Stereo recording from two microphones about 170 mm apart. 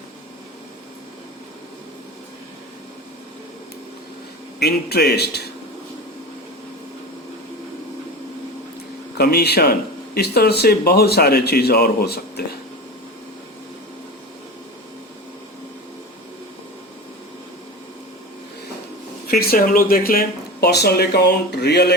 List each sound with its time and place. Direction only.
4.6 s speech: 70° left (ahead or behind)
9.1 s speech: 70° left (ahead or behind)
19.3 s speech: 65° left (ahead or behind)